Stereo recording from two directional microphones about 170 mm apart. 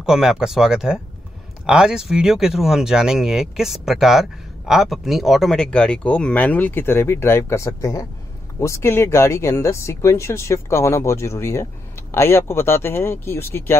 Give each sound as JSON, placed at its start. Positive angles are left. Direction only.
{"t": 0.0, "sound": "speech", "side_deg": -5}